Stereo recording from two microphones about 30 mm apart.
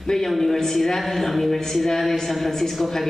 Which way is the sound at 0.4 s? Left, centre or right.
Centre.